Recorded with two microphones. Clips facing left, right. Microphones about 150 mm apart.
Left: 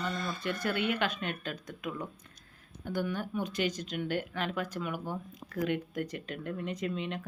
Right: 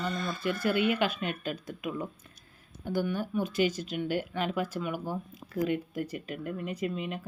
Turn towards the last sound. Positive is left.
turn(degrees=-5)  # may be behind; listen again after turning